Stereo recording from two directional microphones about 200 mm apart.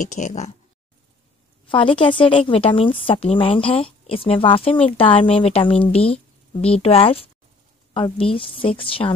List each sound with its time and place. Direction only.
0.0 s speech: 35° left (ahead or behind)
1.7 s a woman's voice: 25° left (ahead or behind)